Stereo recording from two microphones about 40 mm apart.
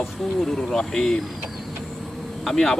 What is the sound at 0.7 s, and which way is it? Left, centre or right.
Speech, centre.